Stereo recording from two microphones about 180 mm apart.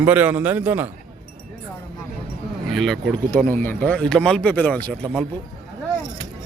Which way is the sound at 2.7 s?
Centre (ahead or behind).